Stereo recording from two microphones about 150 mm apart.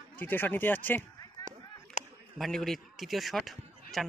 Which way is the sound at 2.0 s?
50° left (ahead or behind).